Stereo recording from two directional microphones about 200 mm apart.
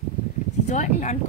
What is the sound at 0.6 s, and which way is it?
Speech, 40° left (ahead or behind).